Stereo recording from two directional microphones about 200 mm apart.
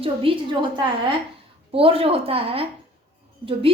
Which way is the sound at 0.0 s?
25° right (ahead or behind).